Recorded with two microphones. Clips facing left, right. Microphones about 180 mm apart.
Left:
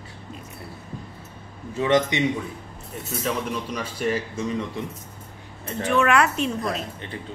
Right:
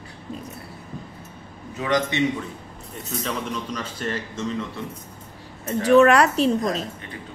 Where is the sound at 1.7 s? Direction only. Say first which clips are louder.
Left 3 dB; 25° left (ahead or behind).